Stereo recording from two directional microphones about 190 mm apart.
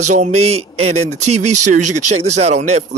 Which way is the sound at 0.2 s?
35° right (ahead or behind).